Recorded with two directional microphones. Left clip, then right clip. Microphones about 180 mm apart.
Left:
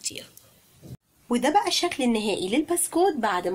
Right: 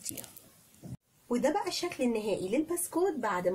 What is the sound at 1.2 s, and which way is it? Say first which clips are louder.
Speech: left 8 dB; 40° left (ahead or behind).